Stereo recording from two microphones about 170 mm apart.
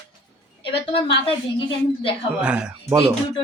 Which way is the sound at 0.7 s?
30° left (ahead or behind).